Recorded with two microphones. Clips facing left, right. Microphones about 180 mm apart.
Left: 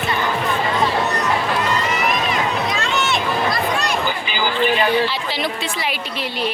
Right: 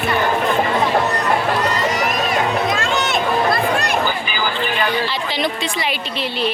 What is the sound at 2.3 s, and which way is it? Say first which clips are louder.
Music: right 3 dB; 50° right (ahead or behind).